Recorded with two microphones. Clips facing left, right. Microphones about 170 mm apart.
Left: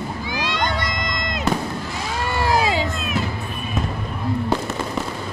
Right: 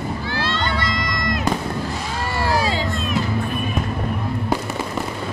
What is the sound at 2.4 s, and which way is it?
Crowd, 15° left (ahead or behind).